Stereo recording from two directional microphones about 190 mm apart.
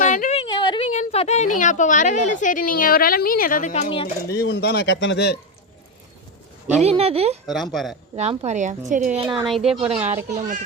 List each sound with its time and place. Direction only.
0.0 s a sound: 40° left (ahead or behind); by 0.9 s 25° left (ahead or behind)
0.9 s a woman's voice: 35° left (ahead or behind)
4.3 s speech: 60° left (ahead or behind)
6.7 s a woman's voice: 30° right (ahead or behind)
7.4 s speech: centre (ahead or behind)
8.1 s a woman's voice: 30° right (ahead or behind)
9.2 s speech: 25° right (ahead or behind)
9.5 s speech: centre (ahead or behind)
9.8 s a woman's voice: 30° right (ahead or behind)